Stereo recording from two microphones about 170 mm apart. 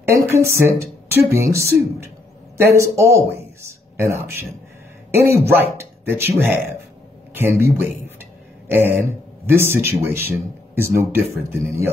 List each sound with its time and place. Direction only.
0.0 s speech: 15° right (ahead or behind)
8.6 s a sound: 10° right (ahead or behind)
9.5 s speech: 15° right (ahead or behind)